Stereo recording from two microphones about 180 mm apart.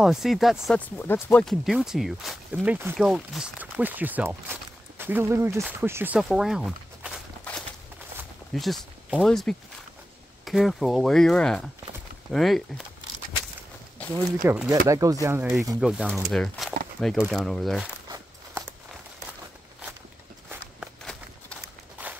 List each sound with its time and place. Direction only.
0.0 s speech: centre (ahead or behind)
8.5 s speech: centre (ahead or behind)
14.4 s speech: 10° right (ahead or behind)
14.9 s speech: 20° right (ahead or behind); by 17.8 s centre (ahead or behind)
18.1 s a sound: 15° right (ahead or behind)
20.4 s walk: centre (ahead or behind)